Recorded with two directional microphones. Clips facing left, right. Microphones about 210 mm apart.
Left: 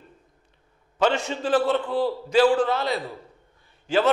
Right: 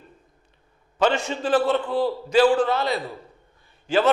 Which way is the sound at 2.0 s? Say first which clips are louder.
Right 1 dB; 40° right (ahead or behind).